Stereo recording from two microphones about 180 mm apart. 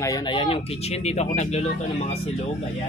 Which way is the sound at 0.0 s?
20° left (ahead or behind).